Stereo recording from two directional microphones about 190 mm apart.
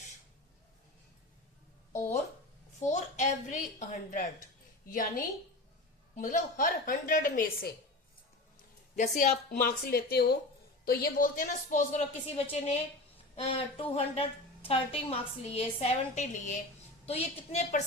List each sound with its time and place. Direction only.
1.9 s a sound: 15° left (ahead or behind)
2.8 s a woman's voice: 40° left (ahead or behind)
9.0 s a woman's voice: 40° left (ahead or behind)